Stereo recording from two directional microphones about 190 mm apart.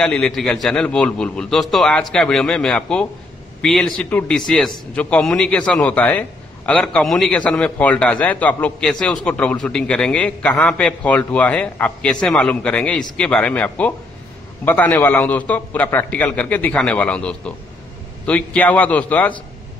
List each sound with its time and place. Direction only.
0.0 s a man's voice: 5° left (ahead or behind)